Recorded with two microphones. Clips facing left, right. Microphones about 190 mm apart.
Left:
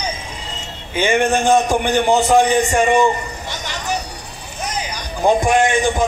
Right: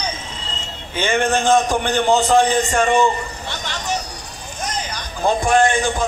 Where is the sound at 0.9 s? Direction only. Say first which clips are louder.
Left 2 dB; 10° left (ahead or behind).